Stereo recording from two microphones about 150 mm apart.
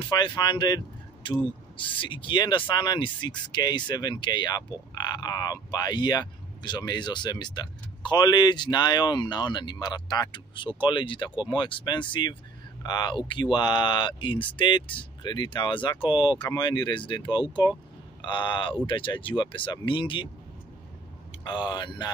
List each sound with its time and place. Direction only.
0.0 s speech: 30° left (ahead or behind)
21.5 s speech: 30° left (ahead or behind)